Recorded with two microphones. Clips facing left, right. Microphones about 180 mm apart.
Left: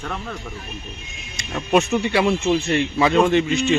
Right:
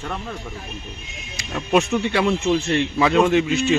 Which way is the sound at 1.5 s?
5° left (ahead or behind).